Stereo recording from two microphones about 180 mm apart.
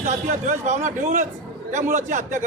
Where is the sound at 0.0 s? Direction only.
40° right (ahead or behind).